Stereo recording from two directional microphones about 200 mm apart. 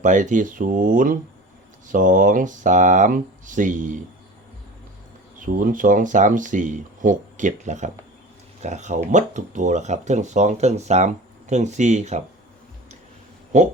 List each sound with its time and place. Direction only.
0.0 s speech: 40° right (ahead or behind)
5.4 s speech: 45° right (ahead or behind)
13.5 s speech: 35° right (ahead or behind)